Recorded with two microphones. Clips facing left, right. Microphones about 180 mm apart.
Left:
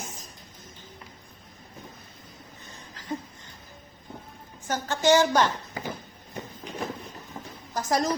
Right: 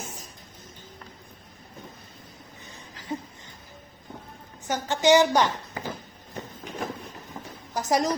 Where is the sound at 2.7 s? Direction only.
15° right (ahead or behind).